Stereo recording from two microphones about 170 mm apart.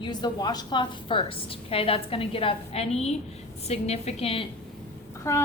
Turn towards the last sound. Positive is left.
turn(degrees=15)  # may be behind; listen again after turning